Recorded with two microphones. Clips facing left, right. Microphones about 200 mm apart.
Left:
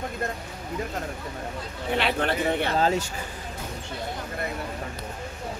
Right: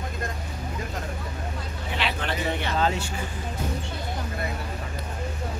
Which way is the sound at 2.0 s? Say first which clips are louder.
Left 4 dB; 50° left (ahead or behind).